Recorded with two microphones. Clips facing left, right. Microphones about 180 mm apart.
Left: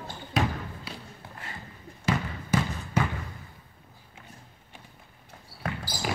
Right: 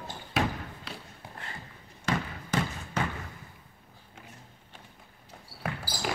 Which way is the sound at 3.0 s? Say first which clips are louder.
Left 4 dB; 10° left (ahead or behind).